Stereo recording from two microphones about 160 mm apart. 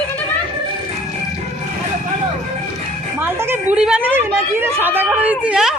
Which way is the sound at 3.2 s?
15° right (ahead or behind).